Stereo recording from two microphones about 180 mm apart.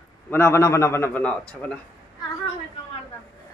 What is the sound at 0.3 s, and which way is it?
A man's voice, 15° left (ahead or behind).